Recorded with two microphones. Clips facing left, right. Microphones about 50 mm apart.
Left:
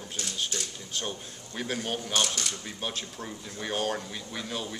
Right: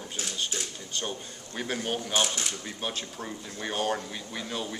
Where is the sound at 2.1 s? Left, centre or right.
Centre.